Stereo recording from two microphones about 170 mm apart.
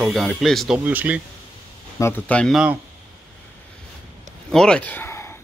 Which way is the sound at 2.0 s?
10° left (ahead or behind).